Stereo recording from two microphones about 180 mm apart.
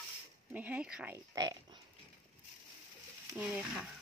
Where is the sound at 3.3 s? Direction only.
5° right (ahead or behind).